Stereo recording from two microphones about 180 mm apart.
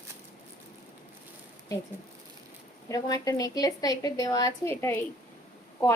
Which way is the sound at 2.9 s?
20° left (ahead or behind).